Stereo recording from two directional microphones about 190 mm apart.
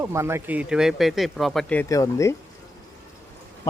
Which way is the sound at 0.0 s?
15° right (ahead or behind).